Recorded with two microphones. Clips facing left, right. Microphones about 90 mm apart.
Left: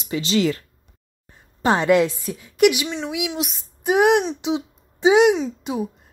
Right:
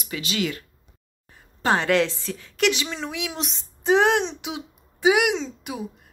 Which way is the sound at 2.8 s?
Centre (ahead or behind).